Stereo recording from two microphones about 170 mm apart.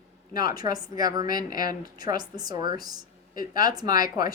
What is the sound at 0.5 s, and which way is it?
Speech, 25° right (ahead or behind).